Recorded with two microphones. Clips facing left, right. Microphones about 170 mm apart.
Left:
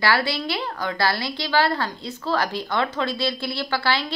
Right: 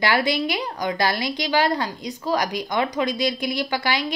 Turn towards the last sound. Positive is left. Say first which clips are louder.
# even
turn(degrees=-15)  # may be behind; listen again after turning